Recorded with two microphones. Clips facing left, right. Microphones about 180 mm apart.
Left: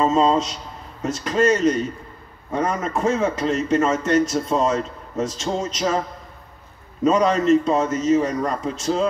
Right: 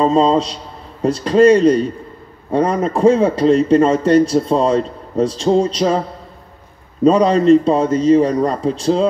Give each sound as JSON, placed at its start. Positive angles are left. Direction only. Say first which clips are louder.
{"t": 0.0, "sound": "speech", "louder": "right 4 dB", "side_deg": -35}
{"t": 7.1, "sound": "speech", "louder": "right 6 dB", "side_deg": -35}